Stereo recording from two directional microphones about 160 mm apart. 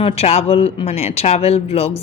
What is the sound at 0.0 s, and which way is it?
A man's voice, 40° left (ahead or behind).